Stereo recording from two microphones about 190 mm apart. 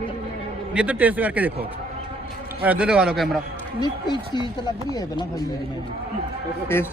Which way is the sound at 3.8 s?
20° left (ahead or behind).